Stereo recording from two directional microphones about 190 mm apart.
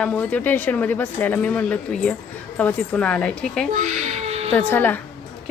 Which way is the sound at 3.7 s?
40° right (ahead or behind).